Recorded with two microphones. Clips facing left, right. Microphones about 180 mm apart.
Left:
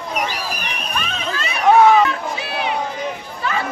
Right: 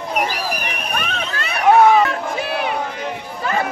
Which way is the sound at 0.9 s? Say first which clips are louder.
Left 2 dB; 60° right (ahead or behind).